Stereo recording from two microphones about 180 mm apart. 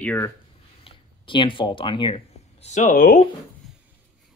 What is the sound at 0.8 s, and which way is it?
Speech, 30° left (ahead or behind).